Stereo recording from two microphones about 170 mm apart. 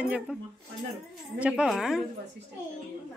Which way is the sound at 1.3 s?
5° right (ahead or behind).